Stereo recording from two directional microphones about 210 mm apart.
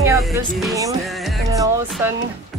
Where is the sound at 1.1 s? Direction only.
Centre (ahead or behind).